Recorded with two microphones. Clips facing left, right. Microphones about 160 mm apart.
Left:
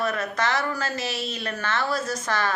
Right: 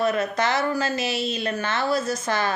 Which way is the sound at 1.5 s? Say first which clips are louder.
Right 1 dB; 15° right (ahead or behind).